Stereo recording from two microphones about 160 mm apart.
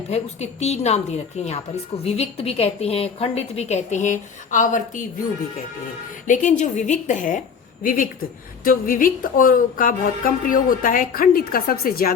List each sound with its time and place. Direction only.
0.1 s a woman's voice: 40° left (ahead or behind)
6.2 s a woman's voice: 50° left (ahead or behind)
8.6 s speech: 60° left (ahead or behind)